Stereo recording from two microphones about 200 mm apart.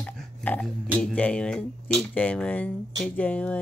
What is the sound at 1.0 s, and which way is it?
Speech, 5° left (ahead or behind).